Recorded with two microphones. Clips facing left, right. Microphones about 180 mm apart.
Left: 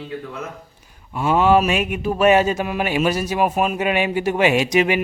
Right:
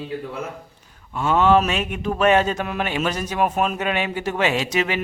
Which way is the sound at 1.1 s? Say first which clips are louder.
Left 1 dB; 10° left (ahead or behind).